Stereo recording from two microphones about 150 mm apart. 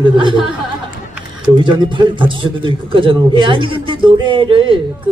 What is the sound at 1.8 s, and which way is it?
Speech, 30° right (ahead or behind).